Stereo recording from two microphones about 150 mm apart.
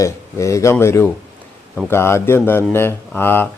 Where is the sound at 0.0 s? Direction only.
20° left (ahead or behind).